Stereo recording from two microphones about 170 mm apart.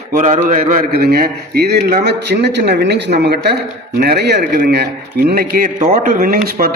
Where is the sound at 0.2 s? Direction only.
50° right (ahead or behind).